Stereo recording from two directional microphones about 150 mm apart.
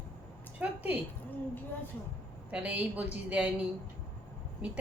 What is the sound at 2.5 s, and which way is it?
A woman's voice, 10° right (ahead or behind).